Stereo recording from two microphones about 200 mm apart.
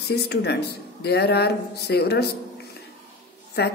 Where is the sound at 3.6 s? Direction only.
55° left (ahead or behind).